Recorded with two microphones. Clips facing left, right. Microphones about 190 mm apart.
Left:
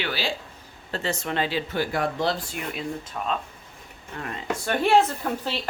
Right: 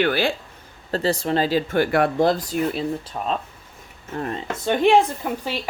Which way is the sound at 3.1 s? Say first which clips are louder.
Right 3 dB; 25° right (ahead or behind).